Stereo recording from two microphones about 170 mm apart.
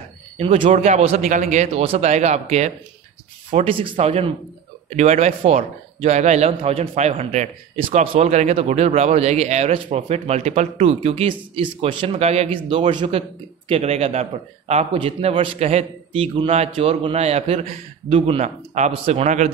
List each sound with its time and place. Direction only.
0.4 s a man's voice: 35° right (ahead or behind)